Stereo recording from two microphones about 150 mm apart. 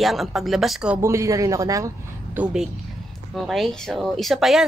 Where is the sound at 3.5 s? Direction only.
Centre (ahead or behind).